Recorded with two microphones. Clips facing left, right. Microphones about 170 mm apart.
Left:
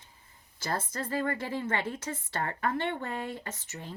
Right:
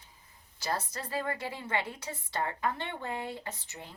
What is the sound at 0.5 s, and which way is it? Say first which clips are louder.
A woman's voice: left 1 dB; 50° left (ahead or behind).